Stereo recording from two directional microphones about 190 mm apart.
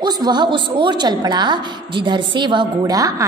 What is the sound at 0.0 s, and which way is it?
A woman's voice, 20° right (ahead or behind).